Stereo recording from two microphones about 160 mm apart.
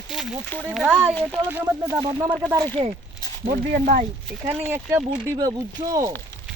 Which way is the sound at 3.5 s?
65° right (ahead or behind).